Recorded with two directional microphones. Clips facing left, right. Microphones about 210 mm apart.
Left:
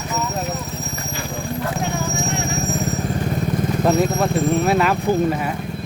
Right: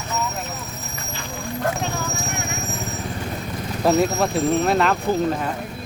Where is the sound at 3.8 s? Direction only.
Centre (ahead or behind).